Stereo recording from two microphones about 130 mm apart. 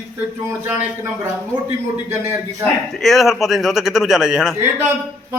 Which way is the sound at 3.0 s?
Centre (ahead or behind).